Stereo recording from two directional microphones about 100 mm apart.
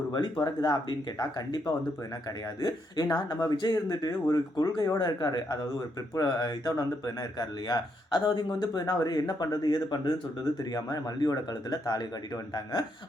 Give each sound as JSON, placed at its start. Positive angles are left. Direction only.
{"t": 0.4, "sound": "a man's voice", "side_deg": 45}